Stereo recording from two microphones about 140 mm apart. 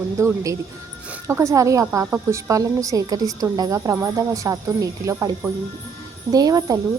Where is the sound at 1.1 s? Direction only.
20° right (ahead or behind).